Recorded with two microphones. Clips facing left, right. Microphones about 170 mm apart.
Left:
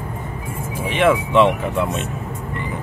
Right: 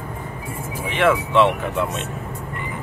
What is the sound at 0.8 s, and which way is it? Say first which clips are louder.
Speech: left 2 dB; 15° left (ahead or behind).